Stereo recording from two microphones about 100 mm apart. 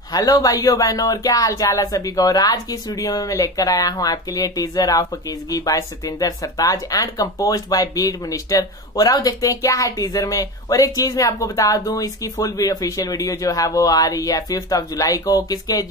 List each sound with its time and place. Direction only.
0.1 s speech: 40° left (ahead or behind)